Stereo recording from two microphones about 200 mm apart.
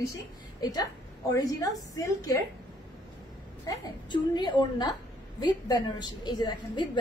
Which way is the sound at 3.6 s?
20° left (ahead or behind).